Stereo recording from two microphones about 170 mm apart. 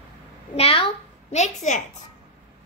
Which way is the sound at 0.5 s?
35° left (ahead or behind).